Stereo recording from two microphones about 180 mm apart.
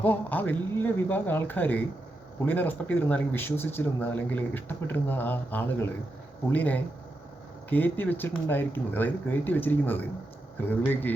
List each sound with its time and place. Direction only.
0.0 s speech: 10° left (ahead or behind)